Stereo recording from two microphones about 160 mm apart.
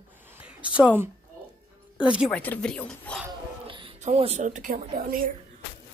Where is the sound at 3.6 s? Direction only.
35° right (ahead or behind).